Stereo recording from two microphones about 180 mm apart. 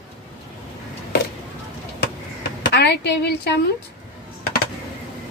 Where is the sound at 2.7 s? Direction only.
70° left (ahead or behind).